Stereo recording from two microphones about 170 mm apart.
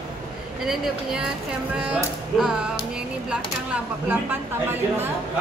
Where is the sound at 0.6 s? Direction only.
5° right (ahead or behind).